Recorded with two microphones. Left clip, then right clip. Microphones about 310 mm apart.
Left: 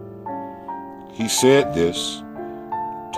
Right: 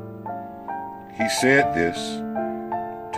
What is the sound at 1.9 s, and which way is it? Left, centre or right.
Speech, left.